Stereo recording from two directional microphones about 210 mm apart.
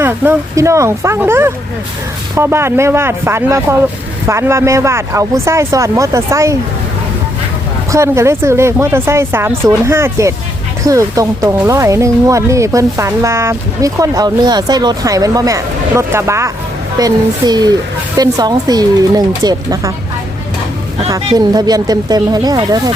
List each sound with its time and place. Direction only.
0.0 s speech: 15° right (ahead or behind)
7.9 s speech: 15° right (ahead or behind)
21.1 s speech: 20° right (ahead or behind)